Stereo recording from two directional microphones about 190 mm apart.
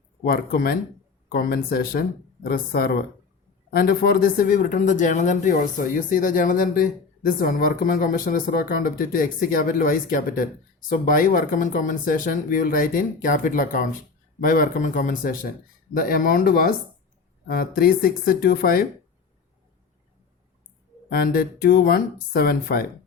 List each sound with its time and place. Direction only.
0.3 s speech: 50° left (ahead or behind)
21.1 s speech: 50° left (ahead or behind)